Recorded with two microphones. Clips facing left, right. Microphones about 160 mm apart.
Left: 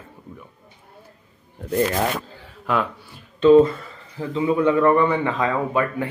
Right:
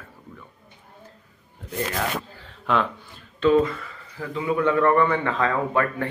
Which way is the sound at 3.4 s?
20° left (ahead or behind).